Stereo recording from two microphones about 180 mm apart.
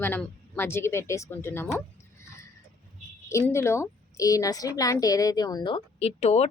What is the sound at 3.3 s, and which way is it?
A woman's voice, 15° left (ahead or behind).